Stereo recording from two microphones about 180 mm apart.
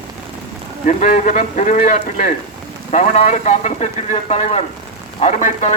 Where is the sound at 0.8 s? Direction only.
45° left (ahead or behind).